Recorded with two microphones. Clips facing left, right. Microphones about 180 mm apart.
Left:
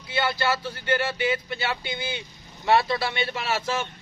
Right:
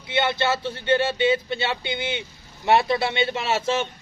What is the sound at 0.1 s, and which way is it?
A man's voice, 25° right (ahead or behind).